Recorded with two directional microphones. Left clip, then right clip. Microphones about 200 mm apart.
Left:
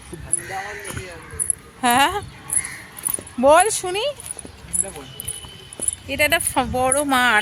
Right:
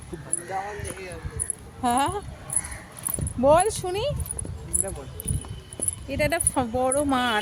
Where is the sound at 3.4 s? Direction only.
25° left (ahead or behind).